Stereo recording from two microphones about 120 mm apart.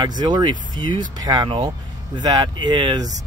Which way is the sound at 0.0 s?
35° right (ahead or behind).